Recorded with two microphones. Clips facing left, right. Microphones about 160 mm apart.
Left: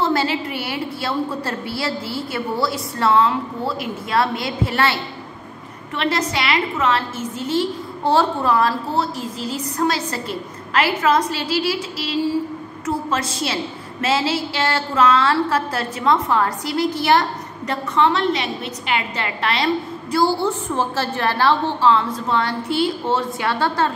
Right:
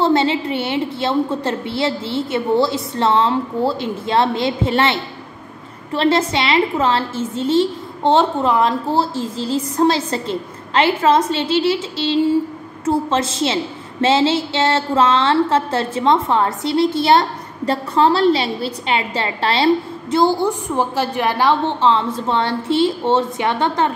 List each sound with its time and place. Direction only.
0.0 s a woman's voice: 25° right (ahead or behind)